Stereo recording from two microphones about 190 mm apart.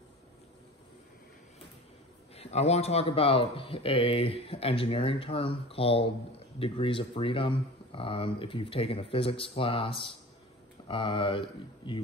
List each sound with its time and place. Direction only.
2.3 s speech: 35° left (ahead or behind)